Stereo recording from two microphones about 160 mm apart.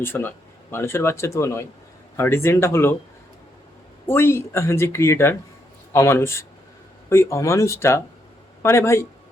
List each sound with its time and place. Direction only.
0.0 s speech: 15° left (ahead or behind)
4.0 s speech: 15° left (ahead or behind)